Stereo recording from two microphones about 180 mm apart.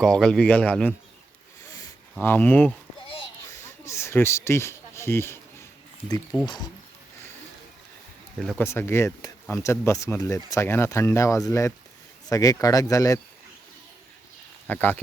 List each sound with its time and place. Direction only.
0.0 s speech: 5° left (ahead or behind)
1.7 s a sound: 15° left (ahead or behind)
8.4 s speech: centre (ahead or behind)
8.6 s speech: 15° left (ahead or behind)
14.7 s speech: 10° left (ahead or behind)